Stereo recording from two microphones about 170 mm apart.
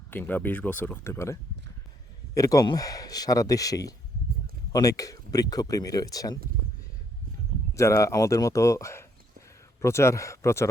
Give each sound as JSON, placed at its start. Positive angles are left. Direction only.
{"t": 0.1, "sound": "a man's voice", "side_deg": 10}
{"t": 7.7, "sound": "a man's voice", "side_deg": 15}